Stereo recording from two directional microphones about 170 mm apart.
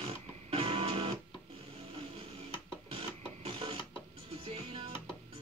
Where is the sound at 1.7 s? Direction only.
35° right (ahead or behind).